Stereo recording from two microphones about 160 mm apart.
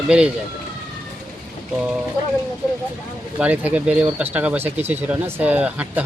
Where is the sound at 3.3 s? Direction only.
10° right (ahead or behind).